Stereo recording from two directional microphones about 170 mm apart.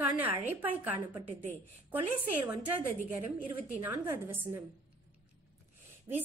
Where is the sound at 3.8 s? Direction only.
10° right (ahead or behind).